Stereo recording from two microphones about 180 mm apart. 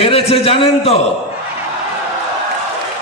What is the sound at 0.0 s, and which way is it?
Speech, 35° left (ahead or behind).